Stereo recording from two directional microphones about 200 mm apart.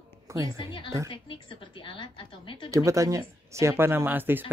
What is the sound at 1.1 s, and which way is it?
A woman's voice, 25° left (ahead or behind).